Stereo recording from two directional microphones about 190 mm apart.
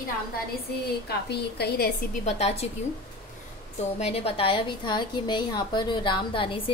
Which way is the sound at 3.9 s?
35° left (ahead or behind).